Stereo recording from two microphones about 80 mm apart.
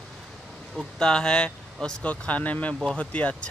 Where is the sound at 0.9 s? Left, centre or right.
Centre.